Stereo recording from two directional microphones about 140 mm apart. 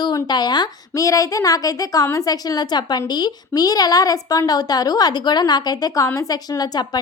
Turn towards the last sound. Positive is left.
turn(degrees=30)  # may be behind; listen again after turning